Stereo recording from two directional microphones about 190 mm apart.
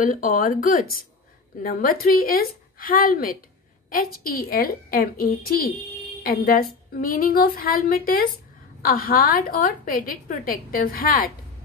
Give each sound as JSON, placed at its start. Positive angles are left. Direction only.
{"t": 0.0, "sound": "a woman's voice", "side_deg": 45}